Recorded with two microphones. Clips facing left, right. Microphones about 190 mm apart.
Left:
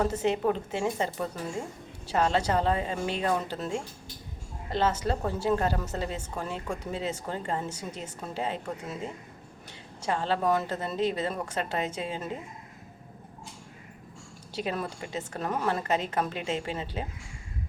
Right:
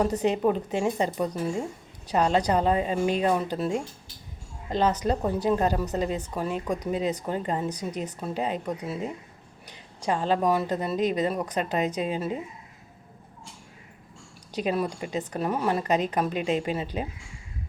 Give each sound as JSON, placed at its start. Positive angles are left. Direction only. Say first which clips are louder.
{"t": 0.0, "sound": "a woman's voice", "louder": "right 3 dB", "side_deg": -15}
{"t": 10.0, "sound": "a woman's voice", "louder": "right 3 dB", "side_deg": -15}
{"t": 14.5, "sound": "a woman's voice", "louder": "right 5 dB", "side_deg": -15}